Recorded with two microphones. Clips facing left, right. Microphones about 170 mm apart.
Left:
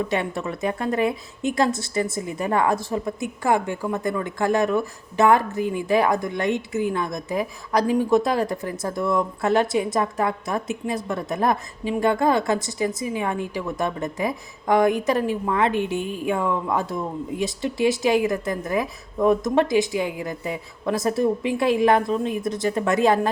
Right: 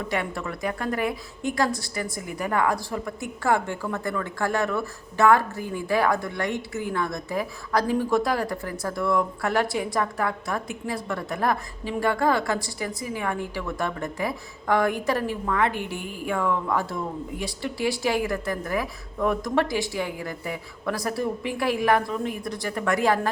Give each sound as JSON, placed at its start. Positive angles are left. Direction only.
{"t": 0.1, "sound": "a woman's voice", "side_deg": 20}